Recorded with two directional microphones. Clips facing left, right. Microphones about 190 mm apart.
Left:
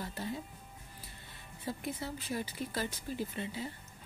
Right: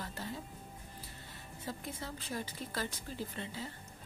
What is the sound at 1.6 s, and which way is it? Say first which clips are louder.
A woman's voice: left 4 dB; 10° left (ahead or behind).